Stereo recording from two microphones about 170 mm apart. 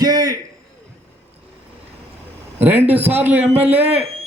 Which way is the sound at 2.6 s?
10° right (ahead or behind).